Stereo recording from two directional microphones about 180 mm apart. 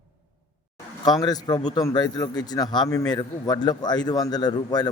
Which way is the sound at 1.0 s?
20° left (ahead or behind).